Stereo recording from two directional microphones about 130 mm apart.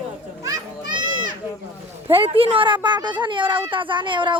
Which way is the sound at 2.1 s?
45° right (ahead or behind).